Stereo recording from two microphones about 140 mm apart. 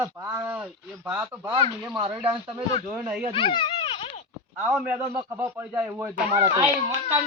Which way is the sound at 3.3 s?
35° left (ahead or behind).